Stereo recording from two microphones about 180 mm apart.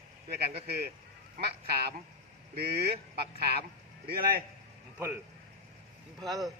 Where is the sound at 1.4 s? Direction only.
60° right (ahead or behind).